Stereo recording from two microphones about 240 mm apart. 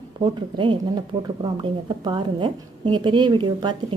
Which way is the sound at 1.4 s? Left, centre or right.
Centre.